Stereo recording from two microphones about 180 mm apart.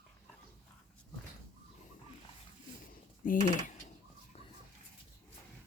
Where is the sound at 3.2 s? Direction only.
50° left (ahead or behind).